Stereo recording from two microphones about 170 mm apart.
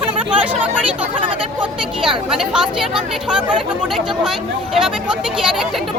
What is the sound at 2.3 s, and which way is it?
Speech, 5° right (ahead or behind).